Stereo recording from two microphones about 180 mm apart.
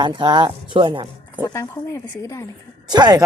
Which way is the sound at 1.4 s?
15° left (ahead or behind).